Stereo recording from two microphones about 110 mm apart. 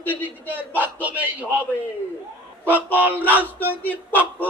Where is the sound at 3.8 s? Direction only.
15° left (ahead or behind).